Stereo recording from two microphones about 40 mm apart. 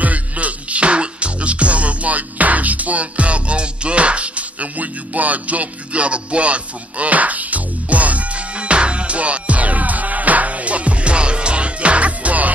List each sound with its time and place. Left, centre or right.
0.0 s music: right